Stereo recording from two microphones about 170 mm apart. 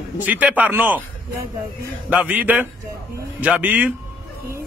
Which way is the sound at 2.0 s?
10° right (ahead or behind).